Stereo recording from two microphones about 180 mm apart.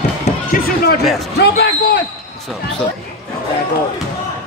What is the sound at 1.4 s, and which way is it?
Speech, 65° left (ahead or behind).